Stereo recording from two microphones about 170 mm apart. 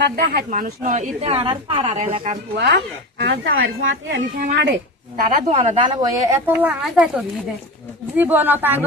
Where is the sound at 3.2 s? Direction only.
80° right.